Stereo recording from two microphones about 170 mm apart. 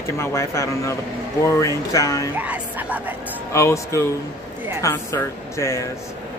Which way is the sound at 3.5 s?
15° left (ahead or behind).